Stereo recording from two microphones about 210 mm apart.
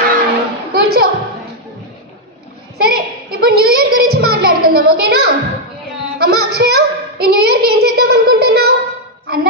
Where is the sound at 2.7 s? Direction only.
50° right (ahead or behind).